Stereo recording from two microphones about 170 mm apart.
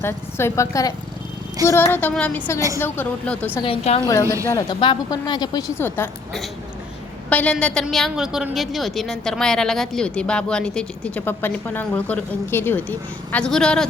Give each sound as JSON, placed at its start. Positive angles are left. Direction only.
{"t": 0.0, "sound": "speech", "side_deg": 15}
{"t": 3.6, "sound": "a woman's voice", "side_deg": 35}
{"t": 4.0, "sound": "a woman's voice", "side_deg": 20}
{"t": 7.3, "sound": "a woman's voice", "side_deg": 10}